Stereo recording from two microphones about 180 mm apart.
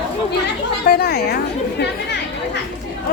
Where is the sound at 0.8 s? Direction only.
60° left (ahead or behind).